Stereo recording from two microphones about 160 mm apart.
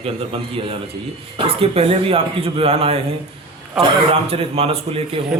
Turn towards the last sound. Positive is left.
turn(degrees=-35)  # may be behind; listen again after turning